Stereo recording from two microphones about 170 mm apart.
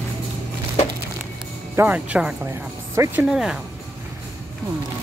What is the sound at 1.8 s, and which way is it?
Speech, 10° right (ahead or behind).